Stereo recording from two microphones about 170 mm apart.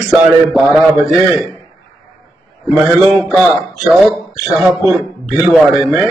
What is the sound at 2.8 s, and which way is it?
A man's voice, 5° right (ahead or behind).